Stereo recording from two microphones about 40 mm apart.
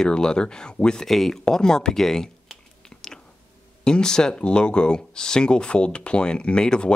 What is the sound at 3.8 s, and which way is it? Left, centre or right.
Speech, centre.